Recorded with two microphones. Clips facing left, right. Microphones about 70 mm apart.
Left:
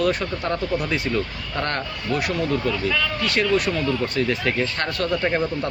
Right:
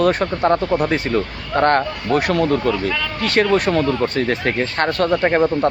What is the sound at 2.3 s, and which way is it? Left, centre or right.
Speech, right.